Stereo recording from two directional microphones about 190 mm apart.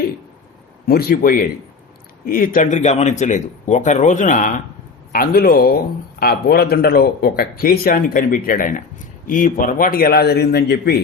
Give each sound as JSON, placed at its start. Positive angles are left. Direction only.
{"t": 0.9, "sound": "a man's voice", "side_deg": 55}